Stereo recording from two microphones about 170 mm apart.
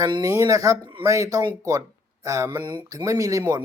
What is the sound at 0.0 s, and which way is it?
Speech, 20° right (ahead or behind).